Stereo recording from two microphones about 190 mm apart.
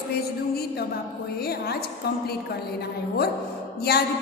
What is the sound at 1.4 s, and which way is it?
A woman's voice, 55° left (ahead or behind).